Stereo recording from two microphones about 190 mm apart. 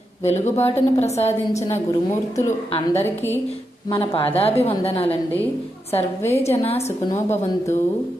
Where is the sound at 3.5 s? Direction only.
30° left (ahead or behind).